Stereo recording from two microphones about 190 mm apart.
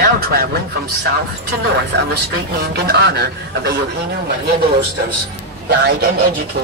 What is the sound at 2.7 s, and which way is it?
A man's voice, 60° right (ahead or behind).